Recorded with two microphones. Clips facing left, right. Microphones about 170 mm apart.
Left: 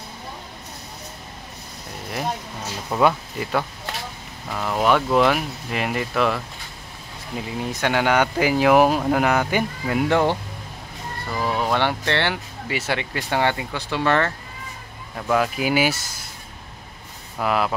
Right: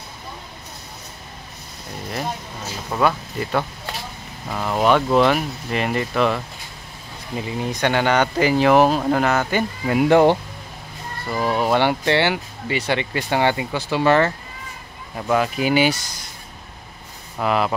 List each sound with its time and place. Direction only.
2.1 s speech: 5° left (ahead or behind)
4.5 s speech: 5° right (ahead or behind); by 9.7 s 10° left (ahead or behind)
9.8 s speech: 5° right (ahead or behind)
11.4 s speech: 5° right (ahead or behind)
17.4 s speech: centre (ahead or behind)